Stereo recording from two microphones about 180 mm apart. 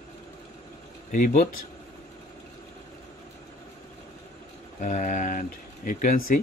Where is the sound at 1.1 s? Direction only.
45° left (ahead or behind).